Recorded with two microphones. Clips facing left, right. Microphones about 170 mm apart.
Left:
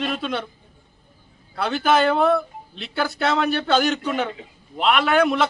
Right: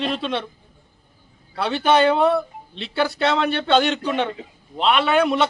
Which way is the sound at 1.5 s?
Centre (ahead or behind).